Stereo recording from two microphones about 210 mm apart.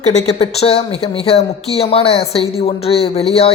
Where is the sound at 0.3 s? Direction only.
30° left (ahead or behind).